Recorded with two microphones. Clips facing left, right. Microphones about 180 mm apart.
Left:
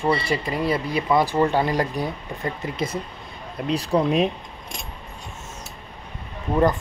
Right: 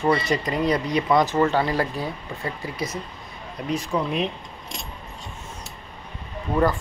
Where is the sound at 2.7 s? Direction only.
30° left (ahead or behind).